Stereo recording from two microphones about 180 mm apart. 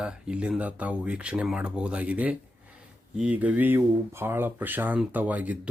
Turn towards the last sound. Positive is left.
turn(degrees=-10)  # may be behind; listen again after turning